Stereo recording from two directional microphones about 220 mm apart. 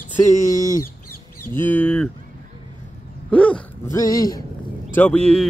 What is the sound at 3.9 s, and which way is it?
Speech, 15° left (ahead or behind).